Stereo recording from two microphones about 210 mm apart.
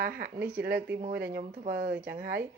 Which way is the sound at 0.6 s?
50° right (ahead or behind).